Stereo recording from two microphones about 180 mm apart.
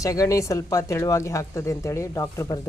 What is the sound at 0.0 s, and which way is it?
Speech, 20° left (ahead or behind).